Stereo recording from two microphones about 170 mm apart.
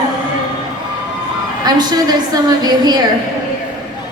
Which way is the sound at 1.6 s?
25° right (ahead or behind).